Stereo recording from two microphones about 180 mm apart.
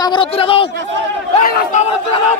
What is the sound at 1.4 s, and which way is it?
Speech, 45° left (ahead or behind).